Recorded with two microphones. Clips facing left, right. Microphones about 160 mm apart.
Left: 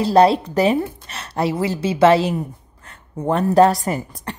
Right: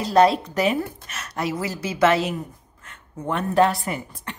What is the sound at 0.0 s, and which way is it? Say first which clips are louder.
A woman's voice: left 3 dB; 30° left (ahead or behind).